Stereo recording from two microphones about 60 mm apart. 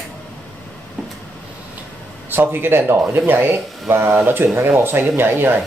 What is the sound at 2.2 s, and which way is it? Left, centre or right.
Speech, right.